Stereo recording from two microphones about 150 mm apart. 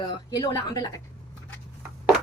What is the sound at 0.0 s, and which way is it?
A woman's voice, 30° left (ahead or behind).